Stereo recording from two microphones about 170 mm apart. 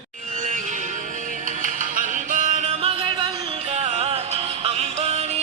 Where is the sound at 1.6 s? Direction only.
50° right (ahead or behind).